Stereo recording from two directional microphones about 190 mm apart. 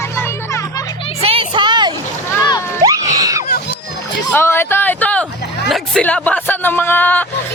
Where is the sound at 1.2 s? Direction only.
25° right (ahead or behind).